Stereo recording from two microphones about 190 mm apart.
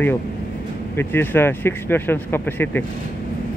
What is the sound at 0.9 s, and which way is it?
Speech, 10° left (ahead or behind).